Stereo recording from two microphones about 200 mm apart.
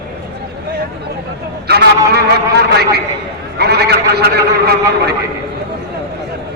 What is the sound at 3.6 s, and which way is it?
A man's voice, 55° right (ahead or behind).